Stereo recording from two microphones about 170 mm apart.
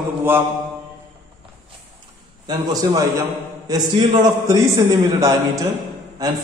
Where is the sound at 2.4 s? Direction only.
25° right (ahead or behind).